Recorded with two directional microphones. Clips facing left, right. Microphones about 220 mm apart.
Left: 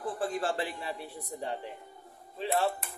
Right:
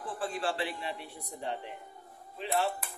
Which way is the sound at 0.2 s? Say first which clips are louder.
Left 1 dB; 40° left (ahead or behind).